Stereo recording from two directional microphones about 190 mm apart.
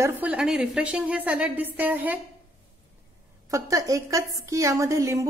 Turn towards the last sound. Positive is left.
turn(degrees=-15)  # may be behind; listen again after turning